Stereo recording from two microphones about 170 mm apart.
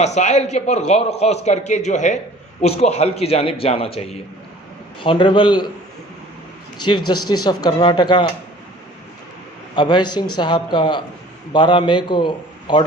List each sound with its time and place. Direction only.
0.0 s a man's voice: 40° left (ahead or behind); by 5.7 s 25° left (ahead or behind)
6.8 s a man's voice: 25° left (ahead or behind)
9.7 s a man's voice: 30° left (ahead or behind)